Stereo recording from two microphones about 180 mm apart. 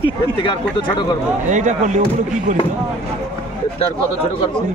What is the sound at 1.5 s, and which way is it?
Speech, 40° right (ahead or behind).